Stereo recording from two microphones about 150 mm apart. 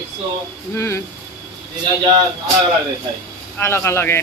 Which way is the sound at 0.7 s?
15° left (ahead or behind).